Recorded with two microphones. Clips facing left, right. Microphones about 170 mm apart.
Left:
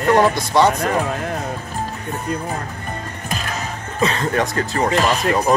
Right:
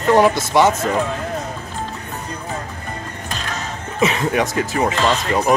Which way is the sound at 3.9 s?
20° right (ahead or behind).